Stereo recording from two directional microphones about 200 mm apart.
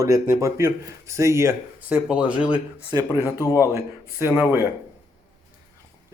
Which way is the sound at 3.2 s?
15° left (ahead or behind).